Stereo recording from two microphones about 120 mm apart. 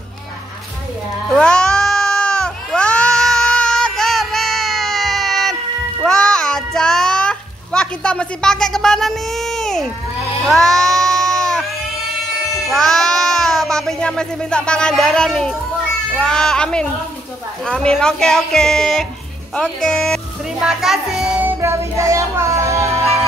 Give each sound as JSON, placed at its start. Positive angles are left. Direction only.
{"t": 1.3, "sound": "goat", "side_deg": 5}
{"t": 6.0, "sound": "a sound", "side_deg": 5}
{"t": 10.4, "sound": "music", "side_deg": 0}
{"t": 12.6, "sound": "speech", "side_deg": 0}
{"t": 21.5, "sound": "music", "side_deg": -25}